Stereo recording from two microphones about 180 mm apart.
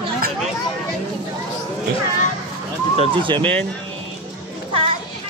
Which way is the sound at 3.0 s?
25° right (ahead or behind).